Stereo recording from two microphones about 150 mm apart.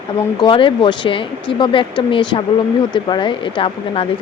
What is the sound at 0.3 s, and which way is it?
Speech, 35° left (ahead or behind).